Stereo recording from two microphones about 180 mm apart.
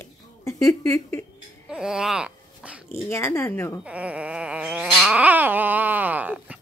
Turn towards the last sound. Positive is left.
turn(degrees=-10)  # may be behind; listen again after turning